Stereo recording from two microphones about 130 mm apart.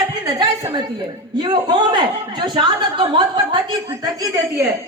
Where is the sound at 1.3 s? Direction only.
35° right (ahead or behind).